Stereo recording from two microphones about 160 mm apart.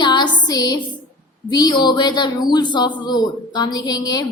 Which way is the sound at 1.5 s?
25° left (ahead or behind).